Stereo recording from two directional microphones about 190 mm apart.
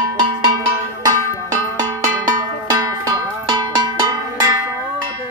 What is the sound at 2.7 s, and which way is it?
Music, 20° right (ahead or behind).